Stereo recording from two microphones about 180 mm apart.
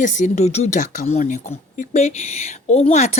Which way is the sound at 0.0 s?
45° left (ahead or behind).